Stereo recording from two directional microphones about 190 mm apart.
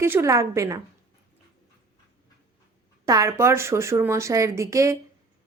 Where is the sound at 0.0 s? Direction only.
15° right (ahead or behind).